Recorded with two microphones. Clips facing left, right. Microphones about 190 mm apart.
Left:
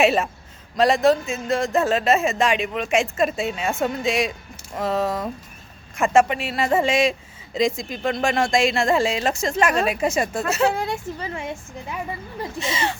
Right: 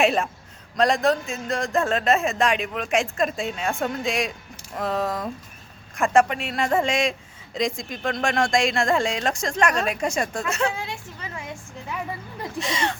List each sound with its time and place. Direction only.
0.0 s a man's voice: centre (ahead or behind)
11.2 s a woman's voice: 30° left (ahead or behind)
12.4 s a man's voice: centre (ahead or behind)